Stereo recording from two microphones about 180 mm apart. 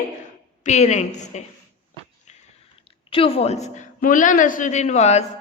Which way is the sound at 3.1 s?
30° left (ahead or behind).